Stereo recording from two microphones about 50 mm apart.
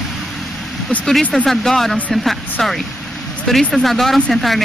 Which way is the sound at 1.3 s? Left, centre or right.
Centre.